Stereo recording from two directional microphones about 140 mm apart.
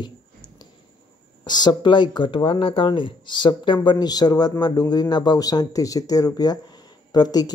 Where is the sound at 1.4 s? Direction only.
30° left (ahead or behind).